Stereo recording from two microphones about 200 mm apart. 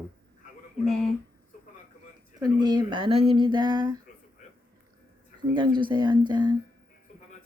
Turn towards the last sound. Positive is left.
turn(degrees=-20)  # may be behind; listen again after turning